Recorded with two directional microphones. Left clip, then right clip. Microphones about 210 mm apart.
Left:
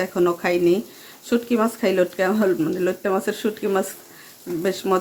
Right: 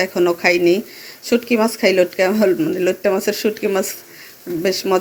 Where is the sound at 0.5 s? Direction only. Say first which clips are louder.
Right 4 dB; 40° left (ahead or behind).